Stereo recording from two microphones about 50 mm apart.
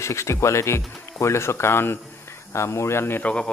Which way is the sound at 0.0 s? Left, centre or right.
Left.